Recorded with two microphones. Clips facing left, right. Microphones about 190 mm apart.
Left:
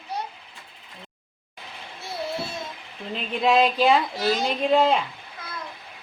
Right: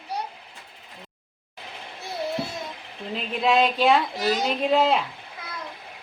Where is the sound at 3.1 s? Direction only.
Centre (ahead or behind).